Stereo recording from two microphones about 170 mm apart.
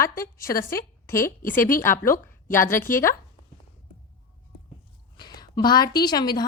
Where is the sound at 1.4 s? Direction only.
55° left (ahead or behind).